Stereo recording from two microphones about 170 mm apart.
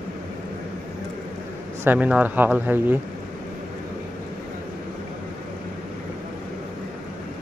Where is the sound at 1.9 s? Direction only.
10° right (ahead or behind).